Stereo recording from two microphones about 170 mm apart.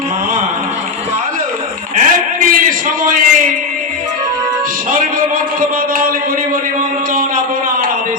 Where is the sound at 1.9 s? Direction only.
50° right (ahead or behind).